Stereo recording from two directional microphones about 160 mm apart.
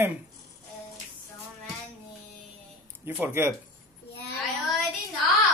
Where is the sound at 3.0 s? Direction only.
15° right (ahead or behind).